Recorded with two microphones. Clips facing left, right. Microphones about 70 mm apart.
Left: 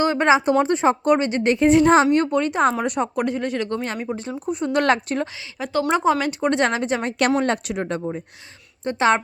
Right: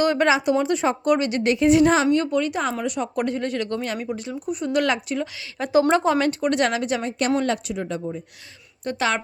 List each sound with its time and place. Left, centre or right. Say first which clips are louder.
0.0 s speech: left 2 dB; left
2.7 s speech: left 3 dB; left
3.2 s speech: left 1 dB; centre; by 5.3 s left
5.9 s speech: even; centre
7.0 s speech: left 2 dB; left
8.8 s speech: left 5 dB; left